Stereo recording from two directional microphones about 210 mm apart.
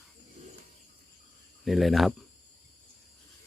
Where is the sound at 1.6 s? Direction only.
Centre (ahead or behind).